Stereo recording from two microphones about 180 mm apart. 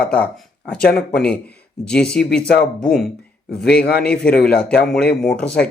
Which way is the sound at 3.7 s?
60° left (ahead or behind).